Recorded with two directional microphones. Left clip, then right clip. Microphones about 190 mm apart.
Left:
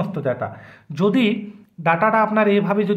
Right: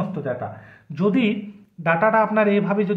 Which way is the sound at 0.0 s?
35° left (ahead or behind).